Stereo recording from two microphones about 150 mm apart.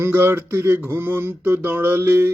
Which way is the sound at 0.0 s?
15° right (ahead or behind).